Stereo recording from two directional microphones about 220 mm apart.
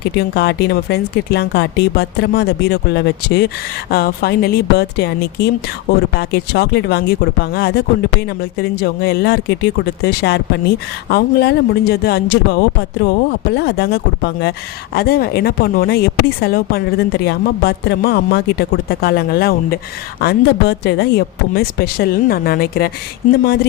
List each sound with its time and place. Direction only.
0.2 s speech: 45° left (ahead or behind)